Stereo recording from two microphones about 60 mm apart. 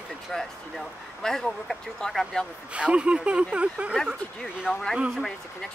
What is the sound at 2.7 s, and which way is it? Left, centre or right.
Speech, centre.